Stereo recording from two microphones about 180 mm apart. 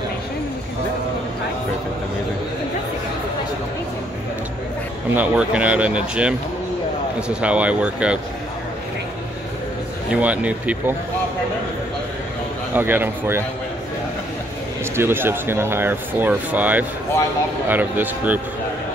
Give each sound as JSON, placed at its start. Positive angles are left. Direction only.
{"t": 5.1, "sound": "speech", "side_deg": -10}
{"t": 10.1, "sound": "speech", "side_deg": -5}
{"t": 12.7, "sound": "speech", "side_deg": -10}
{"t": 15.0, "sound": "speech", "side_deg": -10}